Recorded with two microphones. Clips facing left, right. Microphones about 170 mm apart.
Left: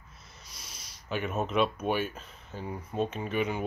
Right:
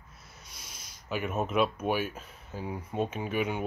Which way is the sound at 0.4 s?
55° right (ahead or behind).